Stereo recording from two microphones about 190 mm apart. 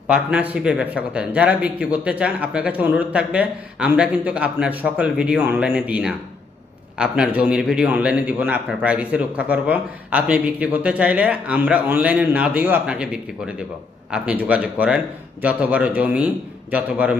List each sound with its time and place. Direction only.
0.1 s a man's voice: 5° right (ahead or behind)
14.1 s a man's voice: 5° right (ahead or behind)